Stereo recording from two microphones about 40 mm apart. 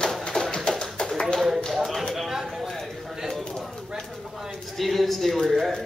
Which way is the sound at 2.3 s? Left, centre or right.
Centre.